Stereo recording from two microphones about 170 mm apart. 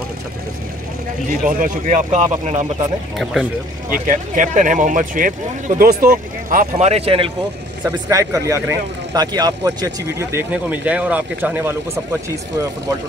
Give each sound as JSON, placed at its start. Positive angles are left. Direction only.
{"t": 1.5, "sound": "speech", "side_deg": -55}
{"t": 2.0, "sound": "speech", "side_deg": -40}
{"t": 3.9, "sound": "speech", "side_deg": -55}
{"t": 6.9, "sound": "speech", "side_deg": -35}
{"t": 7.8, "sound": "speech", "side_deg": -20}